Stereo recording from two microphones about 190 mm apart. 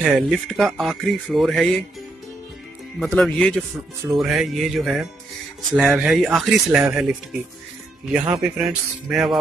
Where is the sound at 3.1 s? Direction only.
5° left (ahead or behind).